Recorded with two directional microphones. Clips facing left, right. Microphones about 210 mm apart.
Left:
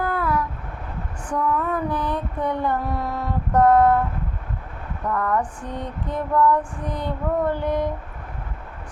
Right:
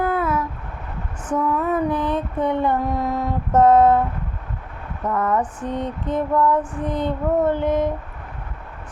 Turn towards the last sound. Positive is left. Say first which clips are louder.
# right 3 dB
turn(degrees=-20)  # may be behind; listen again after turning